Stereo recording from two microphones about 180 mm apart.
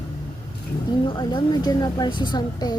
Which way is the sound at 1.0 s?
25° left (ahead or behind).